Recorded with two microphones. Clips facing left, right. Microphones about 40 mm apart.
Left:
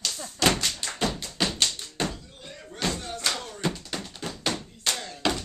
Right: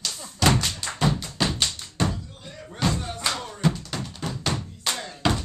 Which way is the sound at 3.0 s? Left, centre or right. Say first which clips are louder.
Right 2 dB; centre.